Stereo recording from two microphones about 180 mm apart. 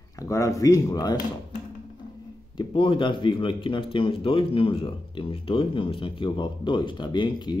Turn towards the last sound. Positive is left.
turn(degrees=25)  # may be behind; listen again after turning